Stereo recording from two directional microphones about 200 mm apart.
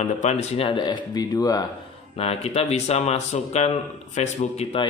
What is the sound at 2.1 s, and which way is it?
Speech, 30° left (ahead or behind).